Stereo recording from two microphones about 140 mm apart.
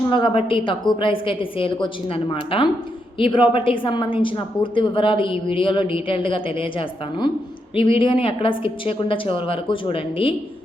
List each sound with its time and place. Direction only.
0.1 s a woman's voice: 40° left (ahead or behind)